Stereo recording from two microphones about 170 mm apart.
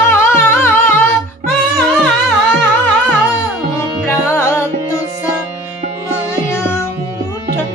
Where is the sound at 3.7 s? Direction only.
15° left (ahead or behind).